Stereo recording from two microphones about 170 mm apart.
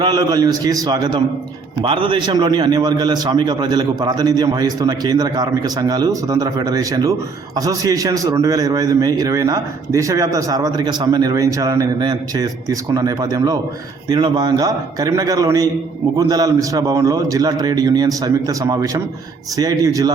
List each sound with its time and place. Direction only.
0.0 s a man's voice: 20° right (ahead or behind)